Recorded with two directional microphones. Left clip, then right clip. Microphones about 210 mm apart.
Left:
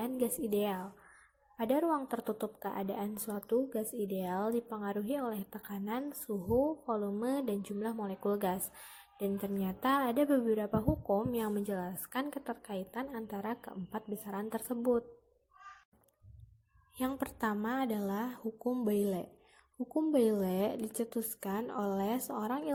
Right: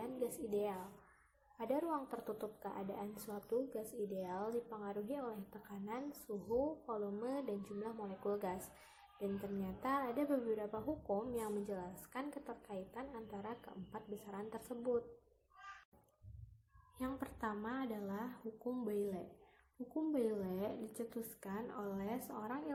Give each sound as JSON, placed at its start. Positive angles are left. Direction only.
{"t": 0.0, "sound": "a woman's voice", "side_deg": 35}
{"t": 9.6, "sound": "speech", "side_deg": 35}
{"t": 17.0, "sound": "speech", "side_deg": 35}